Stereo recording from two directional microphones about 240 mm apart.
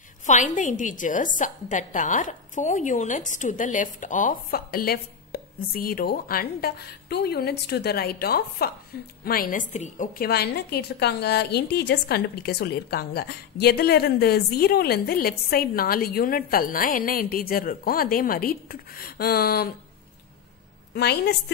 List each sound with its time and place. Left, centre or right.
0.3 s a woman's voice: left
20.9 s a woman's voice: left